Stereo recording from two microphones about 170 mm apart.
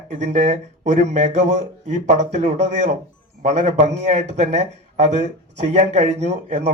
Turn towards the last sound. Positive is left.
turn(degrees=-40)  # may be behind; listen again after turning